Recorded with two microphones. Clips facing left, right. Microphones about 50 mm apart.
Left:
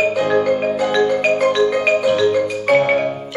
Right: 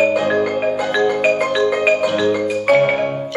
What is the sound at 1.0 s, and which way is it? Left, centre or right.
Marimba, right.